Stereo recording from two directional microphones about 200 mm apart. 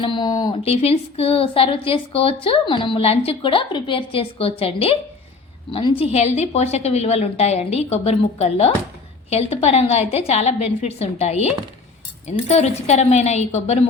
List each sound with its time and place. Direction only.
0.0 s a woman's voice: 20° left (ahead or behind)